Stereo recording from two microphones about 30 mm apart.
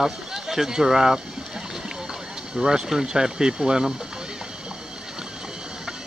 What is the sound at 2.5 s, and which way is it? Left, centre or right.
Speech, centre.